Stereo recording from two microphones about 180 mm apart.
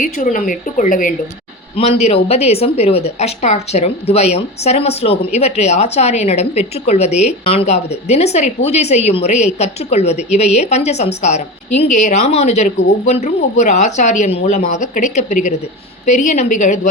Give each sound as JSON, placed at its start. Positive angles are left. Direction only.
{"t": 0.0, "sound": "speech", "side_deg": 45}
{"t": 1.7, "sound": "a woman's voice", "side_deg": 35}